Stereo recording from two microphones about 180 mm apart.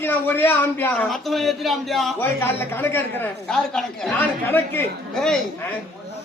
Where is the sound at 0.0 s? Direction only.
10° left (ahead or behind).